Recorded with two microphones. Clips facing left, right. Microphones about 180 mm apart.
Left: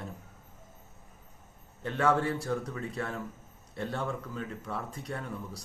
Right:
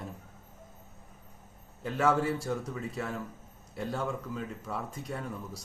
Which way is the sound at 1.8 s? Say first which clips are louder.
Even; 5° right (ahead or behind).